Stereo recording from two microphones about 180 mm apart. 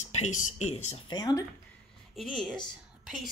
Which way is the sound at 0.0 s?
40° left (ahead or behind).